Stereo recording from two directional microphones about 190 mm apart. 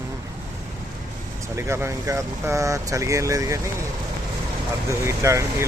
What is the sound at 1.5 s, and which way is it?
Speech, 15° right (ahead or behind).